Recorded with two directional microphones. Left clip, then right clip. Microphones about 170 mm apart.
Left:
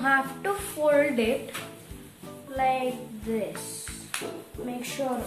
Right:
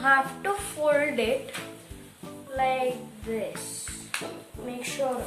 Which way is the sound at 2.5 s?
10° right (ahead or behind).